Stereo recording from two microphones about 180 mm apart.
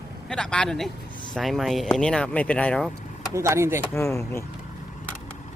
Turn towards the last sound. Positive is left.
turn(degrees=15)  # may be behind; listen again after turning